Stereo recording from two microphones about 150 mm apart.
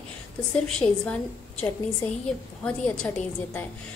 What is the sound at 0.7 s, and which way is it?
Speech, 5° left (ahead or behind).